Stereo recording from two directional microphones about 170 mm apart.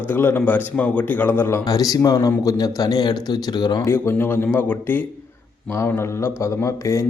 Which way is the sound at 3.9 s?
15° left (ahead or behind).